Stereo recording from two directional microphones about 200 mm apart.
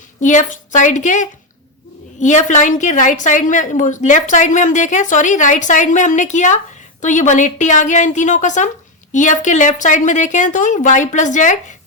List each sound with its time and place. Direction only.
0.2 s a woman's voice: 40° left (ahead or behind)